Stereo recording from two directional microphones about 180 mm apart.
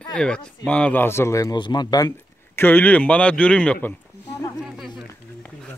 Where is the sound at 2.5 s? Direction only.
10° left (ahead or behind).